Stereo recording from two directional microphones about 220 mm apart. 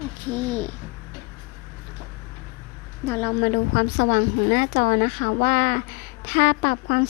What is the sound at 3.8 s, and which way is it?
A woman's voice, 45° left (ahead or behind).